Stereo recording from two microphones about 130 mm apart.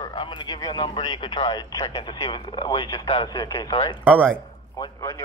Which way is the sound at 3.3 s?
30° left (ahead or behind).